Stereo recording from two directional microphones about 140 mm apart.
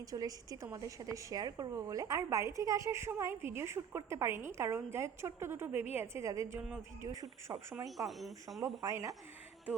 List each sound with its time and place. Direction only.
0.0 s speech: 25° right (ahead or behind)
7.9 s speech: centre (ahead or behind)
8.6 s speech: 25° right (ahead or behind)